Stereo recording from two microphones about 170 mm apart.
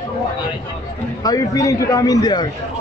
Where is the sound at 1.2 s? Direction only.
20° left (ahead or behind).